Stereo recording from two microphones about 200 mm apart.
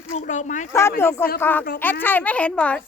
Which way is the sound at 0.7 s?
15° left (ahead or behind).